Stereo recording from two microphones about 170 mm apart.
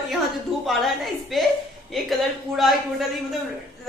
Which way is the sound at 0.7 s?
Centre (ahead or behind).